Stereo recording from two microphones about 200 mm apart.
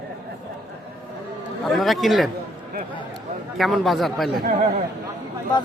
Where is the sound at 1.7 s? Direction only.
Centre (ahead or behind).